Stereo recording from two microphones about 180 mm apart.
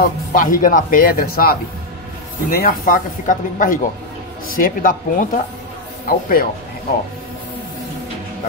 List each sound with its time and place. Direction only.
0.3 s speech: 45° left (ahead or behind)